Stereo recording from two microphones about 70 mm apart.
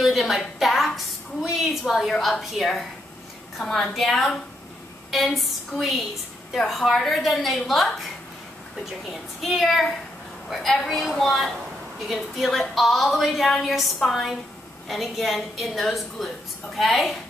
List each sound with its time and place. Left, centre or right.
0.0 s a woman's voice: centre
9.1 s a woman's voice: centre